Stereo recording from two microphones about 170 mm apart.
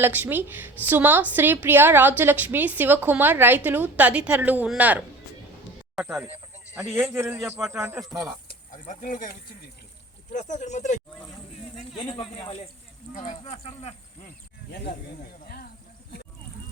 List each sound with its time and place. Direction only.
0.0 s a woman's voice: 10° right (ahead or behind)
8.4 s speech: 50° left (ahead or behind)
12.0 s speech: 30° left (ahead or behind)
13.1 s speech: 45° left (ahead or behind)
14.7 s speech: 70° left (ahead or behind)
15.4 s a sound: 65° left (ahead or behind)